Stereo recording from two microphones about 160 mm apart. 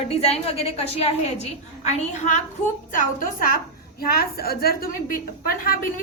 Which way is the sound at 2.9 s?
60° left (ahead or behind).